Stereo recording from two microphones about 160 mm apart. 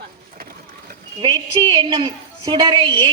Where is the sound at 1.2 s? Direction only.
25° right (ahead or behind).